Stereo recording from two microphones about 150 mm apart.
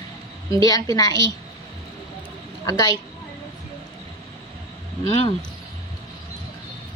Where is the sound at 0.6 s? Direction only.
25° left (ahead or behind).